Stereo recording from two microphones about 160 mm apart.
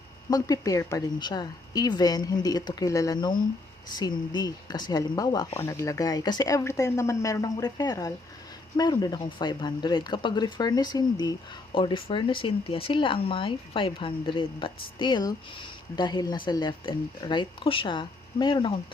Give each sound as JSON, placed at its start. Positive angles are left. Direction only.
{"t": 0.3, "sound": "speech", "side_deg": 25}